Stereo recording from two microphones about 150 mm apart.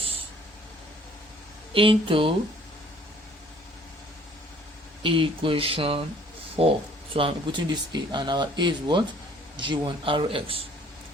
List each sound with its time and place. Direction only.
1.7 s speech: 35° right (ahead or behind)
5.0 s speech: 35° right (ahead or behind)